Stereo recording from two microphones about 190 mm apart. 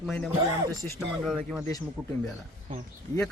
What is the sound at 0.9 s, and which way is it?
Speech, centre (ahead or behind).